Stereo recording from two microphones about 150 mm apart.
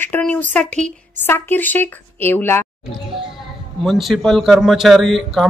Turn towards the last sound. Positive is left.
turn(degrees=0)  # may be behind; listen again after turning